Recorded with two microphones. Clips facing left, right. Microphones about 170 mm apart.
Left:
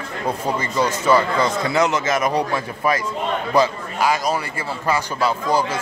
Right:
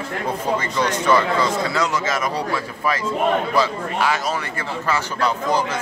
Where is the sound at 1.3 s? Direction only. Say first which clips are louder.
Left 2 dB; 20° left (ahead or behind).